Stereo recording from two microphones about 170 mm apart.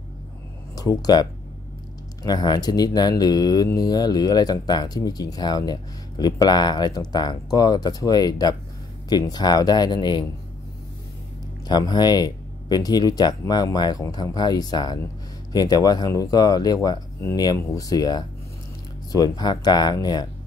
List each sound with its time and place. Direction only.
0.7 s speech: 20° left (ahead or behind)
2.2 s speech: 25° left (ahead or behind)
11.6 s speech: 25° left (ahead or behind)